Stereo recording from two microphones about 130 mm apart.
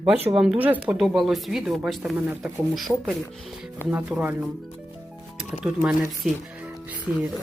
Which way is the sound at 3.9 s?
10° right (ahead or behind).